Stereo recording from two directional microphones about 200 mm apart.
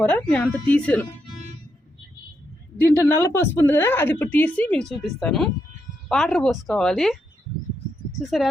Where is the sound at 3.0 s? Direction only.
15° left (ahead or behind).